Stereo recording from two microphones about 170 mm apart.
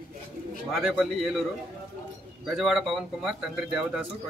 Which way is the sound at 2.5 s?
Centre (ahead or behind).